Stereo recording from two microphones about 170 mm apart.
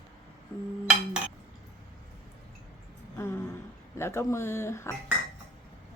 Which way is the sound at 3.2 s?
15° left (ahead or behind).